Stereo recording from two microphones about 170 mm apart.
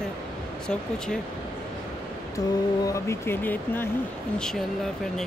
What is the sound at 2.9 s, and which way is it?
Speech, 15° left (ahead or behind).